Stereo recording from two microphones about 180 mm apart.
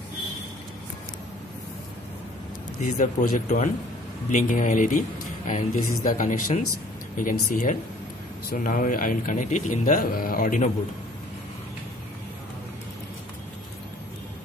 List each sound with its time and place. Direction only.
2.8 s speech: 45° left (ahead or behind)